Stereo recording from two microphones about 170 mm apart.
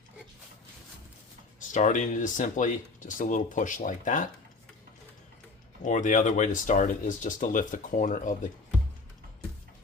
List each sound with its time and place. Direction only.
1.5 s speech: 45° left (ahead or behind)
5.8 s speech: 45° left (ahead or behind)